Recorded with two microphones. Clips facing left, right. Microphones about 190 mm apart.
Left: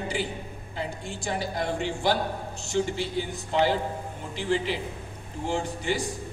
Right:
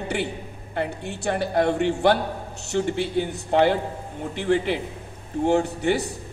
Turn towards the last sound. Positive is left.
turn(degrees=-60)  # may be behind; listen again after turning